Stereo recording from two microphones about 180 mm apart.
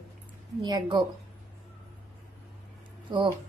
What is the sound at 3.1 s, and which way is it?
Speech, 25° right (ahead or behind).